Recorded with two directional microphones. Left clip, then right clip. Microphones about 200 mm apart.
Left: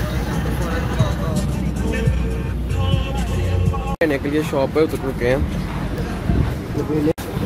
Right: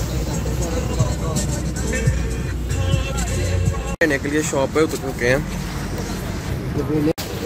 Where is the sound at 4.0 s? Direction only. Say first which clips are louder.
Right 1 dB; centre (ahead or behind).